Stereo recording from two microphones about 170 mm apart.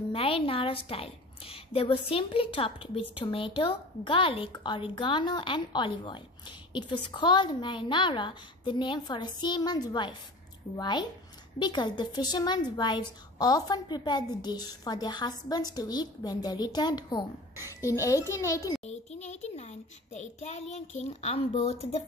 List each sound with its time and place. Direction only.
0.1 s a woman's voice: 35° left (ahead or behind)
18.9 s a woman's voice: 40° left (ahead or behind)